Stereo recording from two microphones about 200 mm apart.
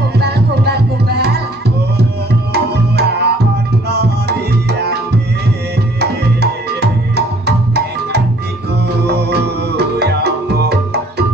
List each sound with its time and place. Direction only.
0.2 s music: 55° right (ahead or behind)
2.5 s tabla: 55° right (ahead or behind)
5.9 s music: 55° right (ahead or behind)